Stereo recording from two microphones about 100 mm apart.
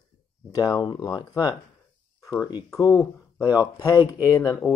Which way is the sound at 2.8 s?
40° left (ahead or behind).